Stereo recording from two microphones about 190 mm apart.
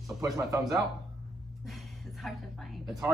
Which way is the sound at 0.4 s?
15° right (ahead or behind).